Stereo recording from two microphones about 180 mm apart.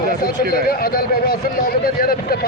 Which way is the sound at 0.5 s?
55° left (ahead or behind).